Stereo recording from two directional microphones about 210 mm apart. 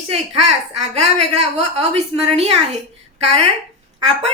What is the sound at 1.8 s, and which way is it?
Speech, 30° right (ahead or behind).